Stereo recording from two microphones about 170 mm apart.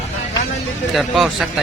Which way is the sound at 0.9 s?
Centre (ahead or behind).